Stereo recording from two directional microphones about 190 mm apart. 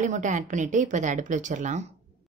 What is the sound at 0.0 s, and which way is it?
A woman's voice, 40° right (ahead or behind).